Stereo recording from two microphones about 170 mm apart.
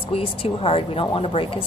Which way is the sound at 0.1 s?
35° left (ahead or behind).